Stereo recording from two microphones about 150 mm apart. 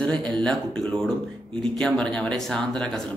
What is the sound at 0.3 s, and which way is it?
A man's voice, 5° left (ahead or behind).